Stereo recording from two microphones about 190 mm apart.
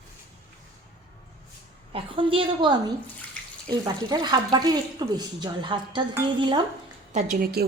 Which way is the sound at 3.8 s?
20° right (ahead or behind).